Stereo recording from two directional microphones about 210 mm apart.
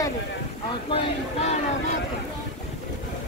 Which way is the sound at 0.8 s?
25° left (ahead or behind).